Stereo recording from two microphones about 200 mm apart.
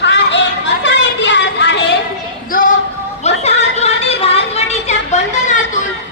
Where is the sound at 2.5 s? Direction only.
45° left (ahead or behind).